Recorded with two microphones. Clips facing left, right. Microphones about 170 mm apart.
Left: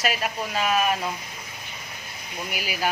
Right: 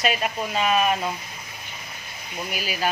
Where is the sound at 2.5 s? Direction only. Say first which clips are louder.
Right 1 dB; 10° left (ahead or behind).